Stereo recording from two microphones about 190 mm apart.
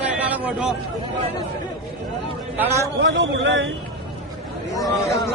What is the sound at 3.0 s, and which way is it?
Speech, 70° right (ahead or behind).